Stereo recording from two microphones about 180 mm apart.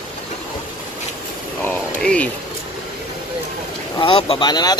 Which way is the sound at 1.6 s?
5° left (ahead or behind).